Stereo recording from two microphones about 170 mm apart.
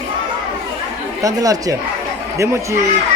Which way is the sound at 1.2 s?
20° right (ahead or behind).